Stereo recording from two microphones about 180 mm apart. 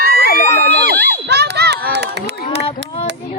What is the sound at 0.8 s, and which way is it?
Run, 60° right (ahead or behind).